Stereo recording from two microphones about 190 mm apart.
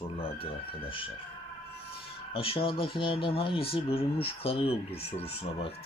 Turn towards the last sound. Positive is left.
turn(degrees=30)  # may be behind; listen again after turning